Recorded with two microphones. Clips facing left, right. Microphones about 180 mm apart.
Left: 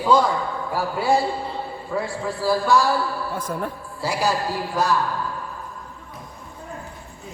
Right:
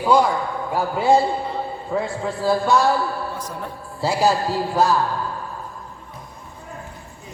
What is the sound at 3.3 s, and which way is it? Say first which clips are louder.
Speech: left 4 dB; 55° left (ahead or behind).